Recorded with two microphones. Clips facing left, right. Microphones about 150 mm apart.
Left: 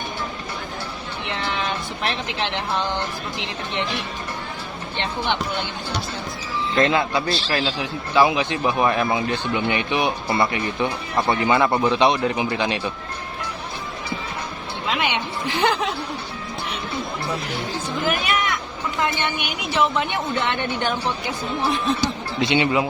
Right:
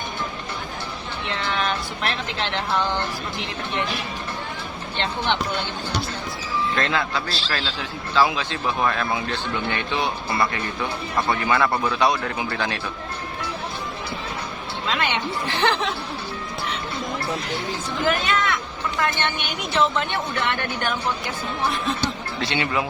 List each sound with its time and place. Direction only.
1.3 s speech: 20° left (ahead or behind)
4.9 s a man's voice: 10° left (ahead or behind)
6.8 s a man's voice: 15° left (ahead or behind)
14.8 s a man's voice: 15° left (ahead or behind)
18.2 s a man's voice: 10° left (ahead or behind)
22.0 s speech: 15° left (ahead or behind)